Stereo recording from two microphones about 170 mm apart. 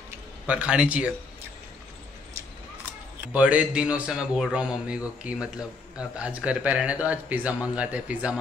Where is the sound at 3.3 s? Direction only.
10° right (ahead or behind).